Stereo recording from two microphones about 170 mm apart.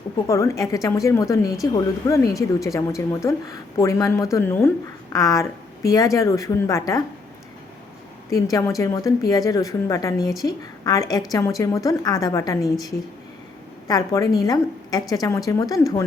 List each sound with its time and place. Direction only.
0.3 s speech: 20° left (ahead or behind)
8.3 s speech: 20° left (ahead or behind)
10.2 s a woman's voice: centre (ahead or behind)
10.4 s speech: 20° left (ahead or behind)
13.8 s a woman's voice: 20° left (ahead or behind)